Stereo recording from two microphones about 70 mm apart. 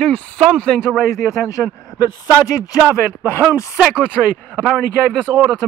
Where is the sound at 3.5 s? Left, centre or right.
Left.